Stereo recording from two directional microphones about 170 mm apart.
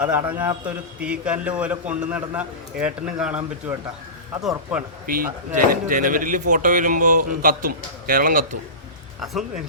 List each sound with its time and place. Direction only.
0.0 s a man's voice: 10° right (ahead or behind)
5.0 s a man's voice: 55° right (ahead or behind)
9.2 s speech: centre (ahead or behind)